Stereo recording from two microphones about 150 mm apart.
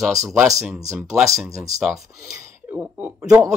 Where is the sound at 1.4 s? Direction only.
20° right (ahead or behind).